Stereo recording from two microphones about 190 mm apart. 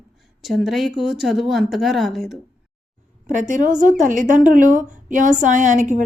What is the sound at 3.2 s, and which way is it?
A woman's voice, 40° right (ahead or behind).